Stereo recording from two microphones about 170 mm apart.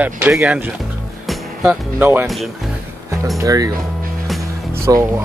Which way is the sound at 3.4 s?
20° right (ahead or behind).